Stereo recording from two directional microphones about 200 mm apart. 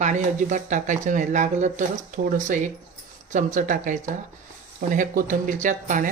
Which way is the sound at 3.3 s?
40° right (ahead or behind).